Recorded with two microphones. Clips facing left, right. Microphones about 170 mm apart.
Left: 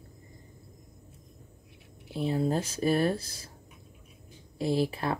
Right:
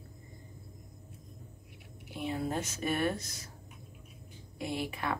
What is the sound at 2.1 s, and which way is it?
Speech, 35° left (ahead or behind).